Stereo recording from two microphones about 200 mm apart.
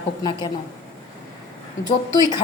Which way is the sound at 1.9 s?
20° left (ahead or behind).